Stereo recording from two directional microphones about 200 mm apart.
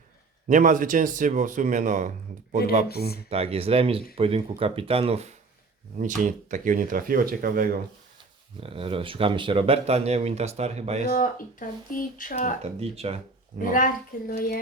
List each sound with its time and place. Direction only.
0.4 s speech: 40° right (ahead or behind)
3.2 s speech: 30° right (ahead or behind); by 7.8 s 45° right (ahead or behind)
8.6 s speech: 30° right (ahead or behind)
11.1 s speech: 45° left (ahead or behind)
12.6 s speech: 30° right (ahead or behind)
13.6 s speech: 45° left (ahead or behind)